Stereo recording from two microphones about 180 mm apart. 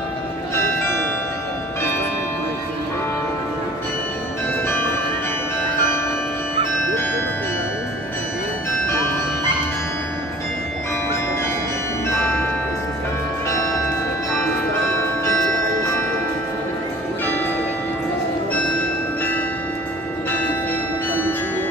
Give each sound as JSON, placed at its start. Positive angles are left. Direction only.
{"t": 0.6, "sound": "music", "side_deg": 15}
{"t": 4.6, "sound": "music", "side_deg": 15}
{"t": 8.8, "sound": "music", "side_deg": 15}
{"t": 12.1, "sound": "music", "side_deg": 15}
{"t": 13.5, "sound": "music", "side_deg": 15}
{"t": 15.0, "sound": "music", "side_deg": 15}
{"t": 21.1, "sound": "music", "side_deg": 10}